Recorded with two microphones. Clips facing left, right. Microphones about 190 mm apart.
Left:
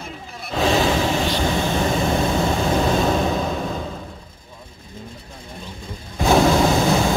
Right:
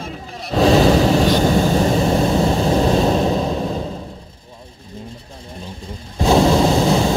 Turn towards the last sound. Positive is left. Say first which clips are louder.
# right 2 dB
turn(degrees=-30)  # may be behind; listen again after turning